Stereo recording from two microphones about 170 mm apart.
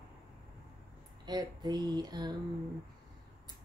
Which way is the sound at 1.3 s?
25° right (ahead or behind).